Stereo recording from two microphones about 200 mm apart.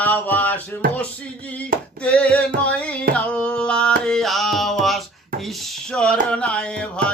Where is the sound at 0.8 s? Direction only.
45° right (ahead or behind).